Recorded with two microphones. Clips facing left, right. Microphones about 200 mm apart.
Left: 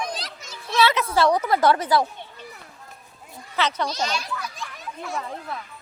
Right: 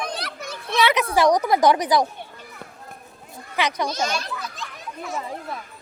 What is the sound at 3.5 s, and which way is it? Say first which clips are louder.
Speech: right 1 dB; 15° right (ahead or behind).